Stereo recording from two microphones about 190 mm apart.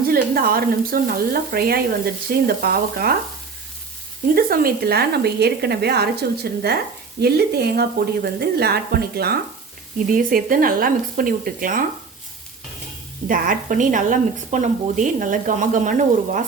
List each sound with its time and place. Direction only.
0.0 s a woman's voice: 50° right (ahead or behind)
4.4 s a woman's voice: 50° right (ahead or behind)
13.2 s a woman's voice: 45° right (ahead or behind)